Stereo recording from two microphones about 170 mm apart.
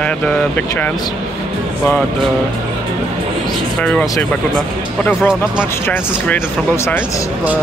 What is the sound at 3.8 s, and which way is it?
Speech, 5° left (ahead or behind).